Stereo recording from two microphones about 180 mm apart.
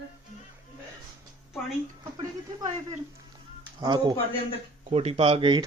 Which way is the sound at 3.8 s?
20° right (ahead or behind).